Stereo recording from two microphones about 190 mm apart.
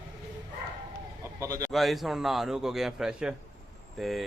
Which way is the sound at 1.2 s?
15° right (ahead or behind).